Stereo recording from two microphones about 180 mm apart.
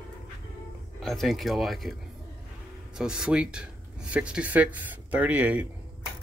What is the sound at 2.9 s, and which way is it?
Speech, 5° right (ahead or behind).